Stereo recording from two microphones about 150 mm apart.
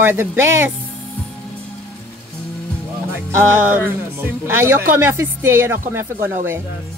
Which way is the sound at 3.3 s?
15° right (ahead or behind).